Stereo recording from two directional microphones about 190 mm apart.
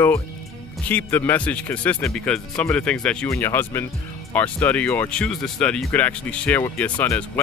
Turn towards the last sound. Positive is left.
turn(degrees=10)  # may be behind; listen again after turning